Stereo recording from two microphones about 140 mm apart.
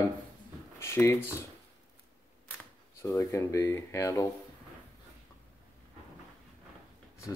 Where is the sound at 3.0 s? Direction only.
20° left (ahead or behind).